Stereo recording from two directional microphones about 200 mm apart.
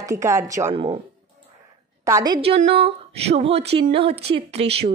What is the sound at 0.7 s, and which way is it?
Speech, 30° right (ahead or behind).